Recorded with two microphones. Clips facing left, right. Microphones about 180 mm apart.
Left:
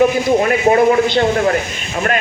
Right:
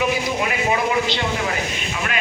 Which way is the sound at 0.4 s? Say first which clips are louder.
Left 10 dB; 50° left (ahead or behind).